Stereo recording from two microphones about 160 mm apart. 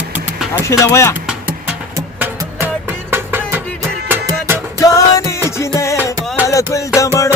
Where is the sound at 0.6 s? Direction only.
20° left (ahead or behind).